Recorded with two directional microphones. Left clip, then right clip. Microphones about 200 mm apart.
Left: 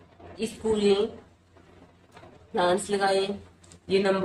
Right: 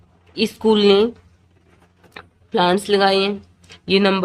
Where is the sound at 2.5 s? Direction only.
55° right (ahead or behind).